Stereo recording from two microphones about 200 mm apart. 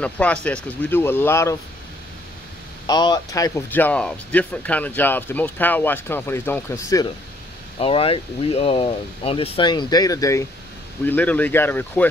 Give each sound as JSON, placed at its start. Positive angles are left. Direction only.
{"t": 0.0, "sound": "speech", "side_deg": 5}
{"t": 2.9, "sound": "speech", "side_deg": 20}
{"t": 7.8, "sound": "speech", "side_deg": 25}